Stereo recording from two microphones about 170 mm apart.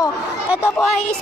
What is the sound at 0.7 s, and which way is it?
Speech, 5° left (ahead or behind).